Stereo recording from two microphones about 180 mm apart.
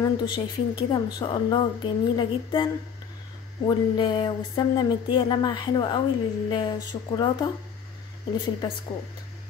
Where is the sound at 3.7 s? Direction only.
25° left (ahead or behind).